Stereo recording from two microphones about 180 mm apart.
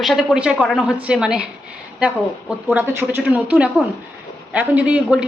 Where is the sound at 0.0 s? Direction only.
Centre (ahead or behind).